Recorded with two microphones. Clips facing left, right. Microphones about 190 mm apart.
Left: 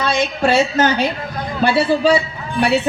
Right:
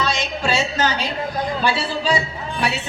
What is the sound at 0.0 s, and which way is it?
A woman's voice, 55° left (ahead or behind).